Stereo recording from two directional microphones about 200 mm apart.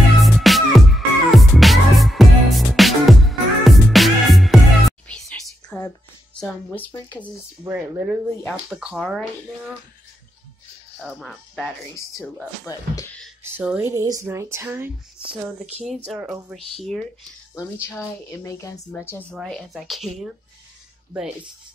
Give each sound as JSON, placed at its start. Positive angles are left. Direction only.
{"t": 0.2, "sound": "music", "side_deg": 0}
{"t": 6.4, "sound": "a woman's voice", "side_deg": 10}
{"t": 7.6, "sound": "speech", "side_deg": -10}
{"t": 11.1, "sound": "speech", "side_deg": 0}
{"t": 12.7, "sound": "a woman's voice", "side_deg": 15}
{"t": 13.4, "sound": "speech", "side_deg": -10}
{"t": 16.1, "sound": "speech", "side_deg": -5}
{"t": 17.6, "sound": "a woman's voice", "side_deg": 15}
{"t": 19.3, "sound": "speech", "side_deg": 0}